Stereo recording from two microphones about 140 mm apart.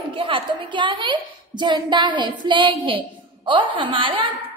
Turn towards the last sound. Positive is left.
turn(degrees=-40)  # may be behind; listen again after turning